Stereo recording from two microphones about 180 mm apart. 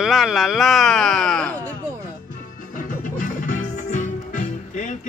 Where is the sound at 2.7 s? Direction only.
45° left (ahead or behind).